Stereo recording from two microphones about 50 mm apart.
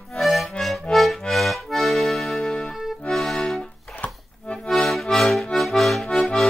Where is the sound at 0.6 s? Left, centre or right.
Centre.